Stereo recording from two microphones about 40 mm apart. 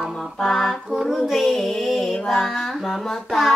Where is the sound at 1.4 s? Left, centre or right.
Centre.